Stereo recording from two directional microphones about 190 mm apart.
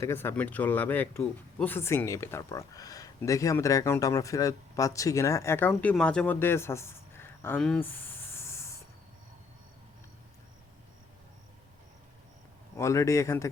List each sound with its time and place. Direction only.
0.0 s speech: 10° left (ahead or behind)
12.7 s speech: 15° left (ahead or behind)